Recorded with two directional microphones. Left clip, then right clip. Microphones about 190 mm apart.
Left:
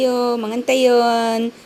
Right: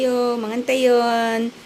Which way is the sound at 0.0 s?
15° left (ahead or behind).